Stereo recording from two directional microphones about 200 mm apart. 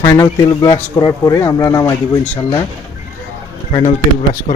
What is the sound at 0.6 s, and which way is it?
Speech, 20° left (ahead or behind).